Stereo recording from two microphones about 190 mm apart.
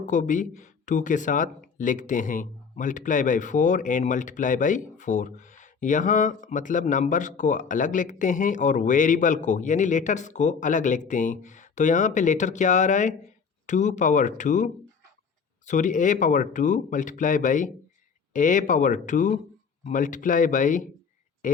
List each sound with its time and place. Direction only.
0.0 s a man's voice: 40° left (ahead or behind)